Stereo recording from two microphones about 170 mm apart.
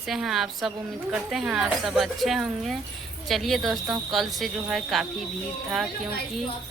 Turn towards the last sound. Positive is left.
turn(degrees=0)  # may be behind; listen again after turning